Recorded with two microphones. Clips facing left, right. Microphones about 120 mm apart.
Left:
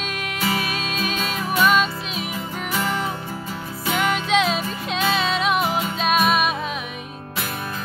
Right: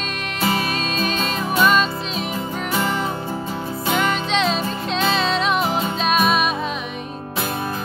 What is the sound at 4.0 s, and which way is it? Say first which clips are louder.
Music: left 2 dB; 5° left (ahead or behind).